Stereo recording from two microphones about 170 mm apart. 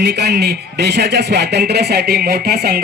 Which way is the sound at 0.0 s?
75° right (ahead or behind).